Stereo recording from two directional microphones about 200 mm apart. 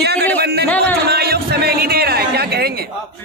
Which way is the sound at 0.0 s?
55° right (ahead or behind).